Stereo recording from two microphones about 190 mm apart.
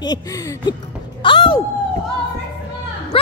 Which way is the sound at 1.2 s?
25° left (ahead or behind).